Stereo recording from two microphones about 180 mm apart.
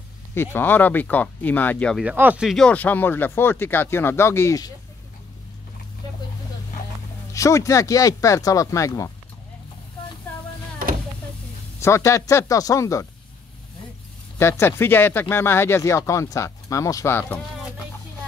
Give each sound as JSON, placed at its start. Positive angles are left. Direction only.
{"t": 0.3, "sound": "speech", "side_deg": 15}
{"t": 2.0, "sound": "speech", "side_deg": -10}
{"t": 7.3, "sound": "speech", "side_deg": 15}
{"t": 11.8, "sound": "speech", "side_deg": 15}
{"t": 14.4, "sound": "speech", "side_deg": 15}